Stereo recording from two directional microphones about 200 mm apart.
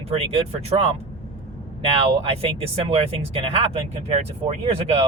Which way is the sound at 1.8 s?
30° right (ahead or behind).